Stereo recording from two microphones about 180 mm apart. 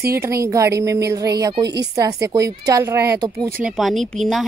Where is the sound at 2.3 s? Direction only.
20° right (ahead or behind).